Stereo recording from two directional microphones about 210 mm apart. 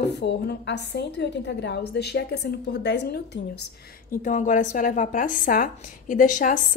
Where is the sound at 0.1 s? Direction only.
55° left (ahead or behind).